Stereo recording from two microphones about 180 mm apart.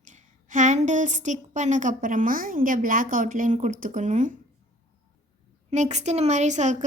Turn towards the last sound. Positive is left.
turn(degrees=-40)  # may be behind; listen again after turning